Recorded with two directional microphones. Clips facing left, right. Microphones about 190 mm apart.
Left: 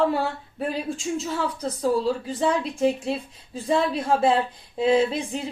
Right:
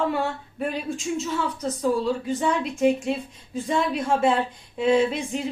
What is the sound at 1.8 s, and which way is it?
Speech, 35° left (ahead or behind).